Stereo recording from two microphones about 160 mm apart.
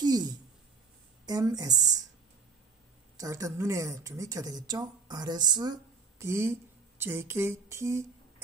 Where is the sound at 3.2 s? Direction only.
20° right (ahead or behind).